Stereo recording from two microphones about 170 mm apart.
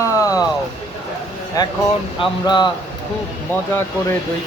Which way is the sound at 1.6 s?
20° left (ahead or behind).